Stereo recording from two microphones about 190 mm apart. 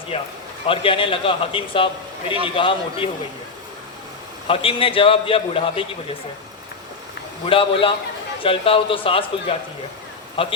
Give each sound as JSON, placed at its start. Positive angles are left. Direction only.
{"t": 0.1, "sound": "a man's voice", "side_deg": 30}
{"t": 4.4, "sound": "a man's voice", "side_deg": 30}
{"t": 7.4, "sound": "a man's voice", "side_deg": 30}